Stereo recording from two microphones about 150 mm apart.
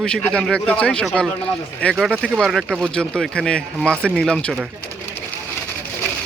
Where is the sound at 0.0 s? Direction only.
5° left (ahead or behind).